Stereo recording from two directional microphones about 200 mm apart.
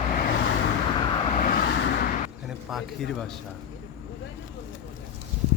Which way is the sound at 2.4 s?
Centre (ahead or behind).